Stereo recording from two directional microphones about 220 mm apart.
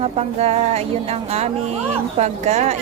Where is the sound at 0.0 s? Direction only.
30° right (ahead or behind).